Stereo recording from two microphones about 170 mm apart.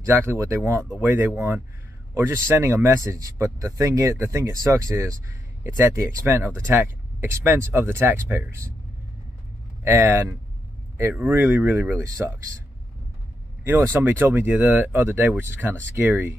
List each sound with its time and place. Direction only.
0.0 s speech: 15° right (ahead or behind)
9.8 s speech: 15° right (ahead or behind)
13.7 s speech: 10° right (ahead or behind)